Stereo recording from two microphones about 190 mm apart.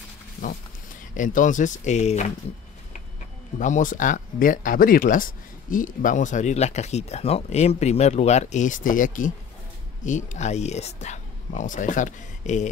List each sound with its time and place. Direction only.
1.1 s speech: 45° left (ahead or behind)
3.5 s speech: 40° left (ahead or behind)